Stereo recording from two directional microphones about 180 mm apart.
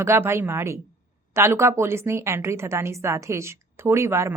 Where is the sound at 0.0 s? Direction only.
15° right (ahead or behind).